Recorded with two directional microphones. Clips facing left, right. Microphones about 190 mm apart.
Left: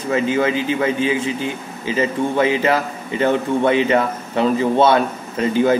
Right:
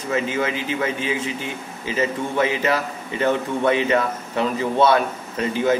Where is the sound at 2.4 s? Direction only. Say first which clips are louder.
Left 3 dB; 30° left (ahead or behind).